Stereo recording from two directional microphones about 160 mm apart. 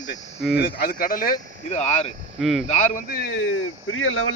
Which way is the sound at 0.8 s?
65° left (ahead or behind).